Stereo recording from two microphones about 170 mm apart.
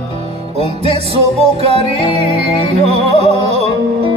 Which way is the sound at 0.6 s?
35° right (ahead or behind).